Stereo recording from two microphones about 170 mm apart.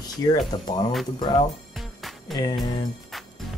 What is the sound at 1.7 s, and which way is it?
Music, centre (ahead or behind).